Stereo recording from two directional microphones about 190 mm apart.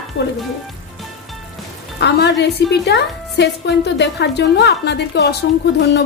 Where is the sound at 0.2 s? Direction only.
90° left.